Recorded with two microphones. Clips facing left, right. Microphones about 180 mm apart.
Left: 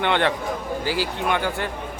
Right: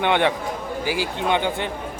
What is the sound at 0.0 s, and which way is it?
Speech, 15° right (ahead or behind).